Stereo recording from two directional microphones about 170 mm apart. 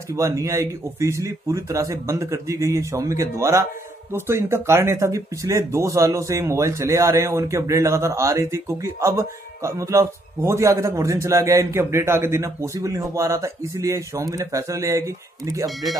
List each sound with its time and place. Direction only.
0.1 s speech: 20° right (ahead or behind)